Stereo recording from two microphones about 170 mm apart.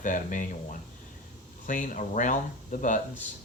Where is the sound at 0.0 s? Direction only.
50° left (ahead or behind).